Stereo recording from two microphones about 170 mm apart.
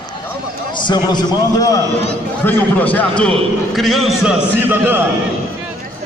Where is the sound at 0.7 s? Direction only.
25° left (ahead or behind).